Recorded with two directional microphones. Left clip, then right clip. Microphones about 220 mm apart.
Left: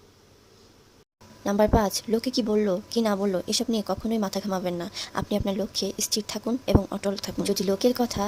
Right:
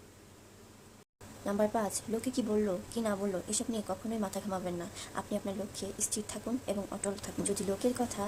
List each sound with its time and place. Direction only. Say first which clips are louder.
1.5 s speech: left 9 dB; 35° left (ahead or behind)